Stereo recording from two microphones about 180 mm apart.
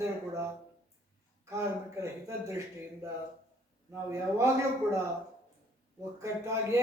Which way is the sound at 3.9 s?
15° right (ahead or behind).